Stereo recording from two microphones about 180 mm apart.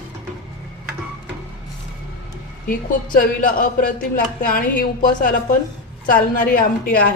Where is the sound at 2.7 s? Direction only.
50° left (ahead or behind).